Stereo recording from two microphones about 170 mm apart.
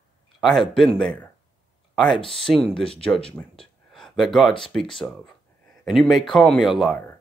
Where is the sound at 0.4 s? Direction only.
Centre (ahead or behind).